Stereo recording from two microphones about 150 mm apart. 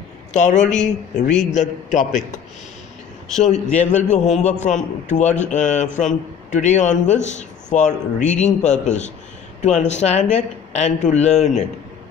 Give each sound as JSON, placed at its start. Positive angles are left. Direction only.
{"t": 0.3, "sound": "a man's voice", "side_deg": 55}
{"t": 3.7, "sound": "a man's voice", "side_deg": 50}